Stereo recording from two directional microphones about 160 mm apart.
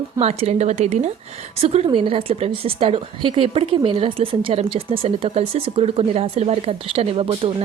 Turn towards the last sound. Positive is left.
turn(degrees=-35)  # may be behind; listen again after turning